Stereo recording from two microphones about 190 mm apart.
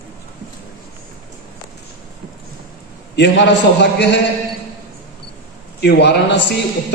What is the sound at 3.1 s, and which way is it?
A man's voice, 65° left (ahead or behind).